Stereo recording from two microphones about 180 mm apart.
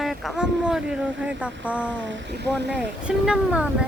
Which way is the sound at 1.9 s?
90° right.